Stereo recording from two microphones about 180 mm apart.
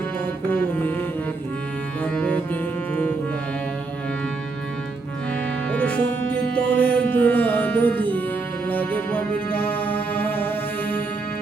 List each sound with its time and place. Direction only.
0.5 s music: 10° left (ahead or behind)
2.0 s music: 5° left (ahead or behind)
5.6 s music: 5° left (ahead or behind)